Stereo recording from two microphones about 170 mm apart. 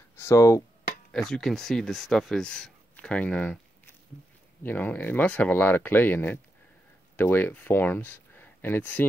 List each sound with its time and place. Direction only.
0.1 s speech: 15° left (ahead or behind)
1.1 s speech: centre (ahead or behind)